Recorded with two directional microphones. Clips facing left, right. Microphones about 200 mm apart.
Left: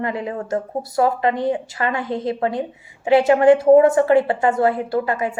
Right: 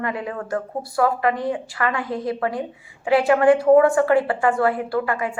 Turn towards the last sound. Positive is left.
turn(degrees=25)  # may be behind; listen again after turning